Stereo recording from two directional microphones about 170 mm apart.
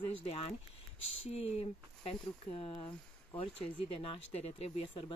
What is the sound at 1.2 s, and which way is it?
Speech, 35° left (ahead or behind).